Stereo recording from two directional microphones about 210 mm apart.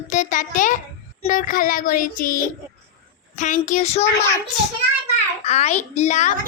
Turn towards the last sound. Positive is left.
turn(degrees=35)  # may be behind; listen again after turning